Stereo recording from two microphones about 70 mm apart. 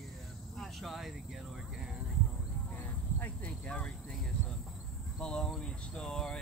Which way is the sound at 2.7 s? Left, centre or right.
Left.